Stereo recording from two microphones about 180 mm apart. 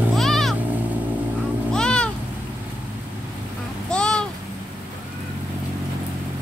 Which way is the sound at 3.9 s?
5° left (ahead or behind).